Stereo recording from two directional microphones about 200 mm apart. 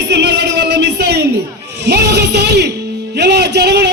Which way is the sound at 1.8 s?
55° right (ahead or behind).